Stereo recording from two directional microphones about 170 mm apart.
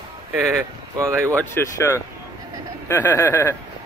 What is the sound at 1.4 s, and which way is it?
Speech, 15° left (ahead or behind).